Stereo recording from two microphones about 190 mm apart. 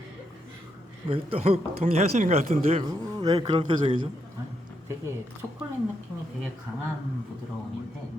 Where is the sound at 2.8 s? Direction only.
20° right (ahead or behind).